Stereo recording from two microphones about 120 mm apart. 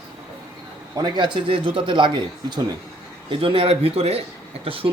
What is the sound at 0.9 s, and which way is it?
Speech, 40° right (ahead or behind).